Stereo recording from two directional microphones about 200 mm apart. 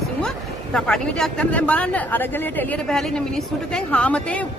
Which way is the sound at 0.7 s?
5° left (ahead or behind).